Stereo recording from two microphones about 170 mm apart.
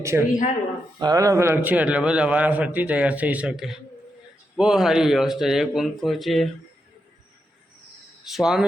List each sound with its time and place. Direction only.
0.0 s a man's voice: 15° right (ahead or behind); by 6.5 s centre (ahead or behind)
8.2 s speech: centre (ahead or behind)